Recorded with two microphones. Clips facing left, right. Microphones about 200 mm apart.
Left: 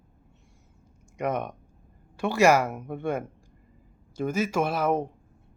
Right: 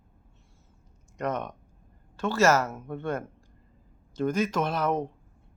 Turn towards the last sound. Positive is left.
turn(degrees=10)  # may be behind; listen again after turning